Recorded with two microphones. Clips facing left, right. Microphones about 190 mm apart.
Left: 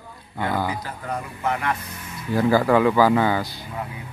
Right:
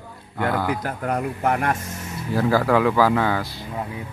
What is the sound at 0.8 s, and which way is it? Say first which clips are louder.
Speech: right 6 dB; 70° right (ahead or behind).